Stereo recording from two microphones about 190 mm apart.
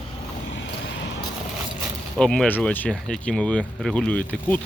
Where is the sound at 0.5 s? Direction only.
75° left (ahead or behind).